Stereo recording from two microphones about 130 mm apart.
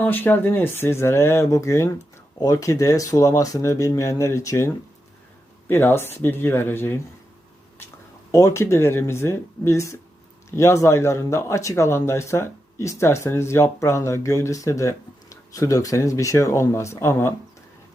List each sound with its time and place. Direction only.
0.0 s speech: 15° left (ahead or behind)
8.3 s speech: 25° left (ahead or behind)